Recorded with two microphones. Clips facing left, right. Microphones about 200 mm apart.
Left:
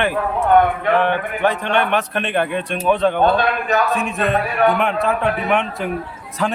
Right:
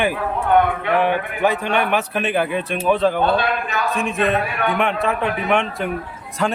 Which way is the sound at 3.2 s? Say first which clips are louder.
Left 2 dB; 45° left (ahead or behind).